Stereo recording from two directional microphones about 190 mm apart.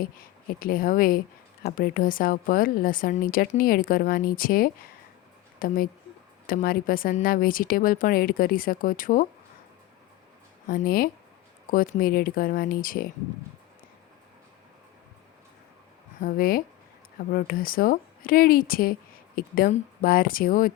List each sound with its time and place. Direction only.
0.0 s a woman's voice: 50° left (ahead or behind)
10.7 s a woman's voice: 50° left (ahead or behind)
16.2 s a woman's voice: 50° left (ahead or behind)